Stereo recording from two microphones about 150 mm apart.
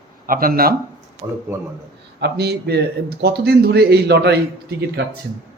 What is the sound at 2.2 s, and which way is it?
A man's voice, 90° right.